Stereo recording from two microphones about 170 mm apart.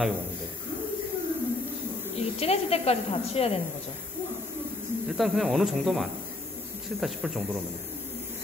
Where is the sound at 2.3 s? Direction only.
35° left (ahead or behind).